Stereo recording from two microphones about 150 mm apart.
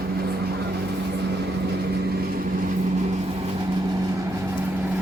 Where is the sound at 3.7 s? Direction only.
25° right (ahead or behind).